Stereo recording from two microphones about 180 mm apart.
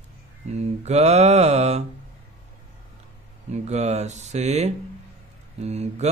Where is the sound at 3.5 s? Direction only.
40° right (ahead or behind).